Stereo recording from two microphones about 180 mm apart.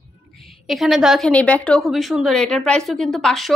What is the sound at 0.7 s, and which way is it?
A woman's voice, centre (ahead or behind).